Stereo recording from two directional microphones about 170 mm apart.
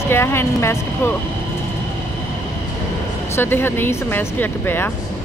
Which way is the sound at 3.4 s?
15° left (ahead or behind).